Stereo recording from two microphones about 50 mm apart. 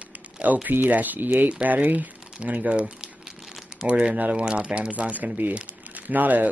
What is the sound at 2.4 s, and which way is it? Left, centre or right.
Crumpling, right.